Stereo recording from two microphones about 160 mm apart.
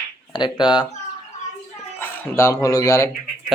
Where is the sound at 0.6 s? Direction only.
5° right (ahead or behind).